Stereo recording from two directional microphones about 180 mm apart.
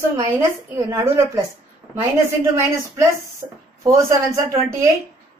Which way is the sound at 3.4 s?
20° right (ahead or behind).